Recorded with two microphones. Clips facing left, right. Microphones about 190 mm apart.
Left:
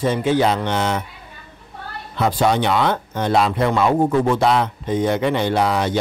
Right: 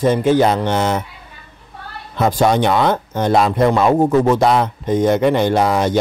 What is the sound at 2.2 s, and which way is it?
Speech, 45° right (ahead or behind).